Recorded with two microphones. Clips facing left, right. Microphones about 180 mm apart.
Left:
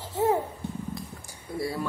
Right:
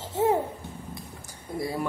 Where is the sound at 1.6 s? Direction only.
20° right (ahead or behind).